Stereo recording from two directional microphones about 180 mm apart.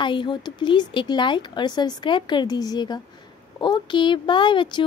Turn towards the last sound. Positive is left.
turn(degrees=25)  # may be behind; listen again after turning